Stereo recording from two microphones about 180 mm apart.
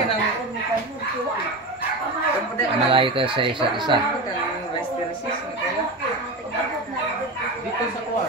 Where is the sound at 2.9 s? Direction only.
30° right (ahead or behind).